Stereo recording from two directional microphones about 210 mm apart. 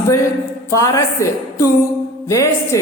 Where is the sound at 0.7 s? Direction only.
15° left (ahead or behind).